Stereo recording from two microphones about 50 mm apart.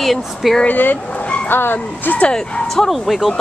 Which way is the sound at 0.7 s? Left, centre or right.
Left.